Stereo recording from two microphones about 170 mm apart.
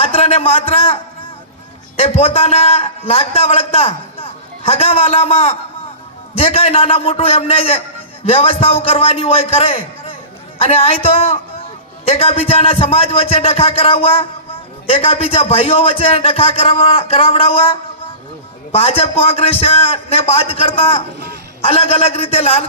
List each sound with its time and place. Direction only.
0.0 s a man's voice: 35° left (ahead or behind)
2.0 s a man's voice: 35° left (ahead or behind)